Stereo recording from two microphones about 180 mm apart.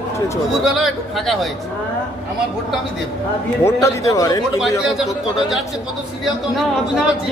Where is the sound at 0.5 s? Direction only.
Centre (ahead or behind).